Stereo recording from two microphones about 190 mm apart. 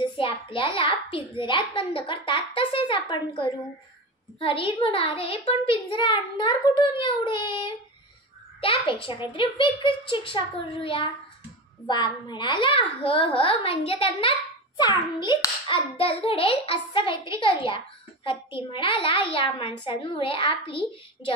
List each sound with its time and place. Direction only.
0.0 s a child's voice: 25° left (ahead or behind)